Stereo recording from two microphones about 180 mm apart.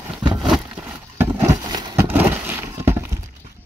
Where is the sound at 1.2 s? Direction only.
20° right (ahead or behind).